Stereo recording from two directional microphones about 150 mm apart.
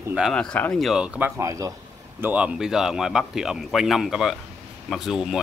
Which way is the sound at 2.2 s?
10° right (ahead or behind).